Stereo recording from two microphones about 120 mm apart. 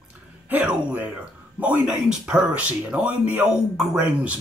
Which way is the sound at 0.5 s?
15° right (ahead or behind).